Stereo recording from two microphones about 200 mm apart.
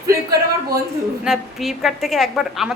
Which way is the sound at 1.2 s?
Centre (ahead or behind).